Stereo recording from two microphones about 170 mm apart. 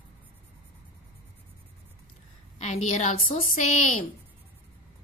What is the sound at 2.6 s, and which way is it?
Speech, 40° left (ahead or behind).